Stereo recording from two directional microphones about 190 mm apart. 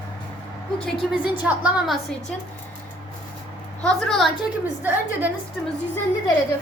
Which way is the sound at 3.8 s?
5° left (ahead or behind).